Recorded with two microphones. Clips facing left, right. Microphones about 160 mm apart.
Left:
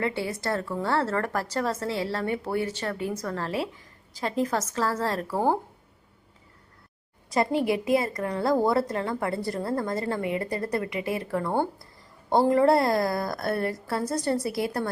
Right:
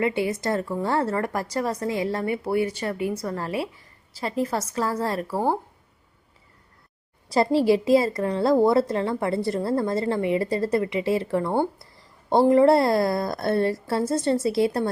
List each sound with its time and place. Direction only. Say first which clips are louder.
0.0 s speech: right 5 dB; 15° right (ahead or behind)
7.3 s a woman's voice: right 5 dB; 30° right (ahead or behind)